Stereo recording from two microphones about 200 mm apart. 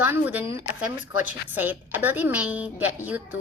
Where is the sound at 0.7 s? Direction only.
75° left (ahead or behind).